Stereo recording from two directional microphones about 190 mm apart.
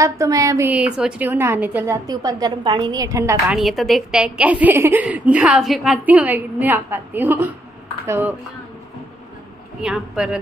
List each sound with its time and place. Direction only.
0.0 s a woman's voice: 15° right (ahead or behind)
3.5 s a woman's voice: centre (ahead or behind)
9.8 s a man's voice: 5° right (ahead or behind)